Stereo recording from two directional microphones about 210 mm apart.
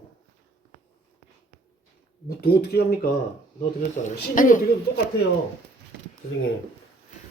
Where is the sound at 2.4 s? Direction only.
50° left (ahead or behind).